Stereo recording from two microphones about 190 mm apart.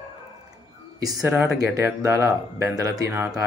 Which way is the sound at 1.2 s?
15° right (ahead or behind).